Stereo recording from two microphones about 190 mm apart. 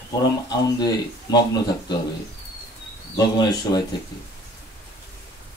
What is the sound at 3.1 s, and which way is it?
Speech, 20° left (ahead or behind).